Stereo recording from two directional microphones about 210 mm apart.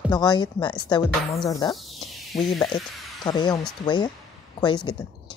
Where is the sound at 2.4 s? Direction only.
20° left (ahead or behind).